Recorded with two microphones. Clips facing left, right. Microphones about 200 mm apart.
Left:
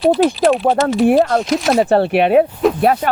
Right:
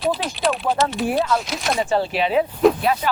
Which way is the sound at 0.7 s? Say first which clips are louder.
Left 8 dB; 55° left (ahead or behind).